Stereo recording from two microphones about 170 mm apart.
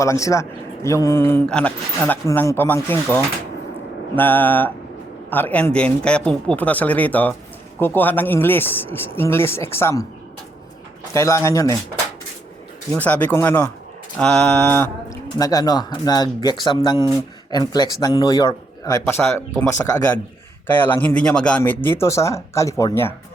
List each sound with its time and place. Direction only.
0.0 s speech: 20° left (ahead or behind)
11.1 s speech: 15° left (ahead or behind)
12.9 s speech: 10° left (ahead or behind)